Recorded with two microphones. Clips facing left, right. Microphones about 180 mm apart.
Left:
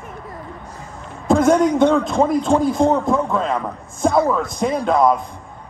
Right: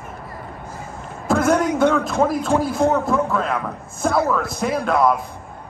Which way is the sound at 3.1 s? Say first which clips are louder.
Left 1 dB; 20° left (ahead or behind).